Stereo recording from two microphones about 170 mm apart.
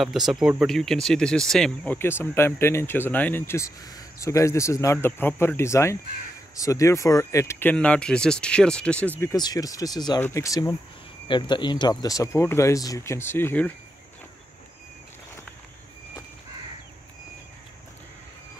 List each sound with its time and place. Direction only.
0.0 s speech: centre (ahead or behind)
9.2 s speech: 20° left (ahead or behind)